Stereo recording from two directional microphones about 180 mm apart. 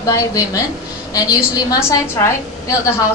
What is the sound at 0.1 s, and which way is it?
A woman's voice, 20° left (ahead or behind).